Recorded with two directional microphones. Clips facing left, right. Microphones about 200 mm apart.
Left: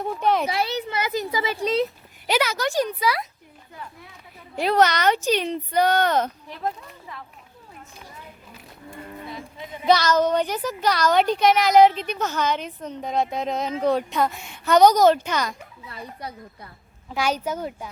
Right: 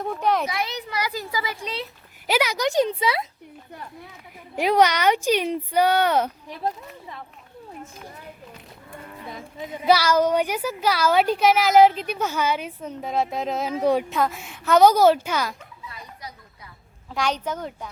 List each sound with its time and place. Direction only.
0.0 s a sound: centre (ahead or behind)
0.4 s speech: 30° left (ahead or behind)
2.2 s speech: 10° right (ahead or behind)
4.5 s a woman's voice: 10° right (ahead or behind)
9.8 s a woman's voice: 10° right (ahead or behind)
15.9 s speech: 60° left (ahead or behind)
17.1 s a child's voice: 5° left (ahead or behind)